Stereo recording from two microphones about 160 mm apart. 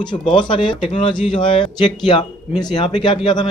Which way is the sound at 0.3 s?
30° left (ahead or behind).